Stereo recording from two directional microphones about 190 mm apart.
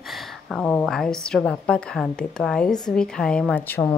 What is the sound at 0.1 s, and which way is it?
A woman's voice, centre (ahead or behind).